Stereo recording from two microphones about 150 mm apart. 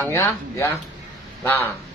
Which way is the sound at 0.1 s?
20° left (ahead or behind).